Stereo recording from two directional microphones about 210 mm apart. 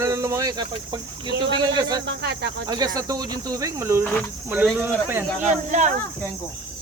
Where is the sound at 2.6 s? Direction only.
20° right (ahead or behind).